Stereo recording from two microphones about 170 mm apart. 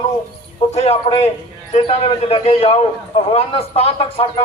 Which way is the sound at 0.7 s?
40° left (ahead or behind).